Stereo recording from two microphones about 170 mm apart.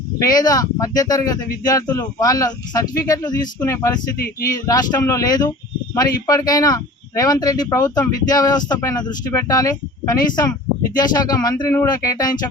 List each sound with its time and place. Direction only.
0.2 s speech: 20° left (ahead or behind)